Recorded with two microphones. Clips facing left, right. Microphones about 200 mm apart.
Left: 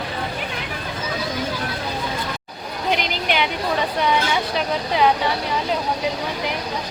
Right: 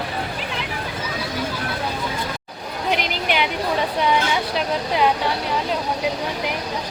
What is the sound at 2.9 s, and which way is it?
Music, 5° right (ahead or behind).